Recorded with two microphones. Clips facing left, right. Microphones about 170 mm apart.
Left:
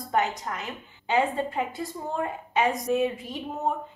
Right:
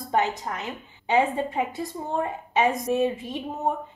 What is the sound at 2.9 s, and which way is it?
Speech, 25° right (ahead or behind).